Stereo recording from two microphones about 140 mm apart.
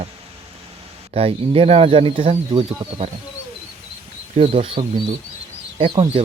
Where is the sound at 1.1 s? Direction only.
45° right (ahead or behind).